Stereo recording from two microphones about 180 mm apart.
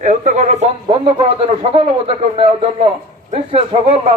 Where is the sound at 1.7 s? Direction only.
30° right (ahead or behind).